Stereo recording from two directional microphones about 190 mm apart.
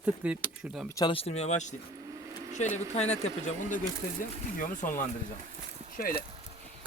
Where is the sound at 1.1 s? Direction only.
30° left (ahead or behind).